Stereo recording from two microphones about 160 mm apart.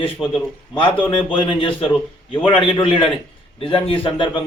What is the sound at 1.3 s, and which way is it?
A man's voice, 35° left (ahead or behind).